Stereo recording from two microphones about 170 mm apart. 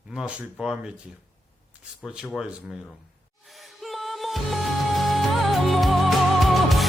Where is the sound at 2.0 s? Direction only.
5° right (ahead or behind).